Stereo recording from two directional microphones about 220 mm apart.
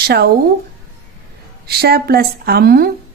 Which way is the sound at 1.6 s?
45° right (ahead or behind).